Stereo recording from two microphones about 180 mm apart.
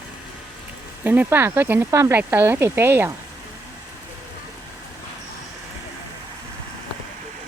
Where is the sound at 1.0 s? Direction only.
10° right (ahead or behind).